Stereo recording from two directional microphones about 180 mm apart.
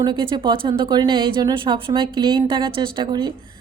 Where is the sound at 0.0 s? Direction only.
25° right (ahead or behind).